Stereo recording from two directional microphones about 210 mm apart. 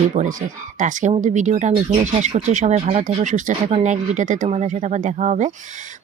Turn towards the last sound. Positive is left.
turn(degrees=-35)  # may be behind; listen again after turning